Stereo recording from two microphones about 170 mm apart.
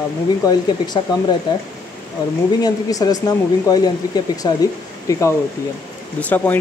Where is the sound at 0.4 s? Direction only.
20° left (ahead or behind).